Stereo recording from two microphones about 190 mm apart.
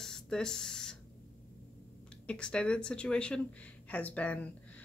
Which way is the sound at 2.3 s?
5° left (ahead or behind).